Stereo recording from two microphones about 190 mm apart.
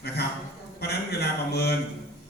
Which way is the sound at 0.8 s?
60° left (ahead or behind).